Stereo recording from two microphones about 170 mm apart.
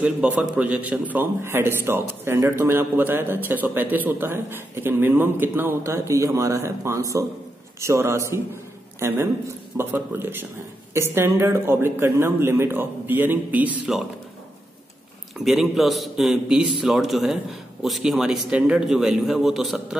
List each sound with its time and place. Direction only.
0.0 s a man's voice: 5° right (ahead or behind)
15.3 s a man's voice: centre (ahead or behind)